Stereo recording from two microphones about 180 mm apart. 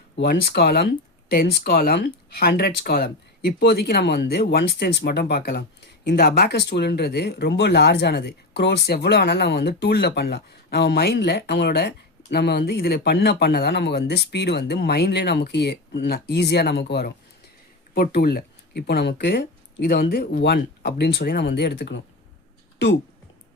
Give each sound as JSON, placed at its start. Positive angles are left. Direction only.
{"t": 0.2, "sound": "speech", "side_deg": 65}